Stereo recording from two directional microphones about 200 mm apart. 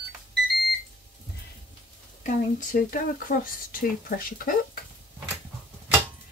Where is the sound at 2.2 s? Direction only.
40° left (ahead or behind).